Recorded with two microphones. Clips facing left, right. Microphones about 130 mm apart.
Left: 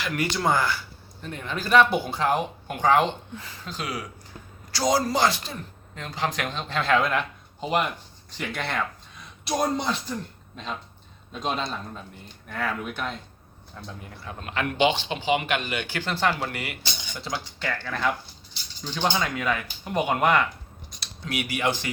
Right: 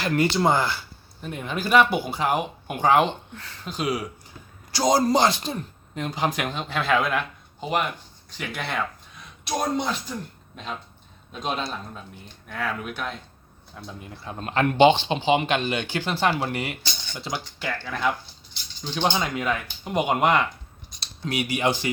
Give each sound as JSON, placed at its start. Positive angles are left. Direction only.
{"t": 0.0, "sound": "a man's voice", "side_deg": -30}
{"t": 8.4, "sound": "speech", "side_deg": -5}
{"t": 11.3, "sound": "speech", "side_deg": 0}
{"t": 14.0, "sound": "speech", "side_deg": -25}
{"t": 17.7, "sound": "a man's voice", "side_deg": -10}
{"t": 18.9, "sound": "speech", "side_deg": -20}